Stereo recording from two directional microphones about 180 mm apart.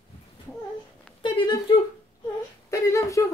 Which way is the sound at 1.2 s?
25° left (ahead or behind).